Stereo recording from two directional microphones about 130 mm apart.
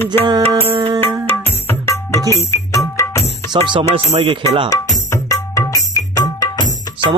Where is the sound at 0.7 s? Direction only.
40° right (ahead or behind).